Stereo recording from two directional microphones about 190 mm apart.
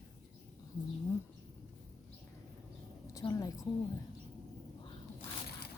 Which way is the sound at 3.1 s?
15° left (ahead or behind).